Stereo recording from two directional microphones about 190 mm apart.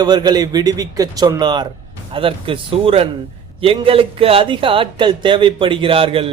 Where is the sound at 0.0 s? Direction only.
20° right (ahead or behind).